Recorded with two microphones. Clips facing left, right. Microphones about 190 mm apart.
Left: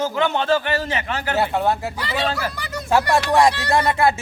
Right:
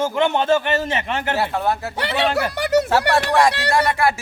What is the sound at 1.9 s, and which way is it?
Speech, 70° right (ahead or behind).